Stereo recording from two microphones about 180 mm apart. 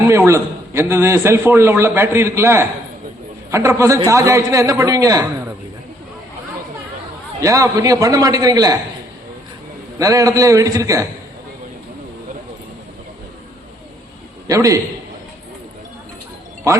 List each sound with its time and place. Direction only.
0.1 s a man's voice: 15° right (ahead or behind)
7.4 s a man's voice: 15° right (ahead or behind)
10.0 s a man's voice: 20° right (ahead or behind)
14.4 s a man's voice: 20° right (ahead or behind)